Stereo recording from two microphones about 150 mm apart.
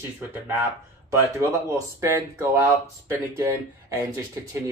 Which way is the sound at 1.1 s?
20° right (ahead or behind).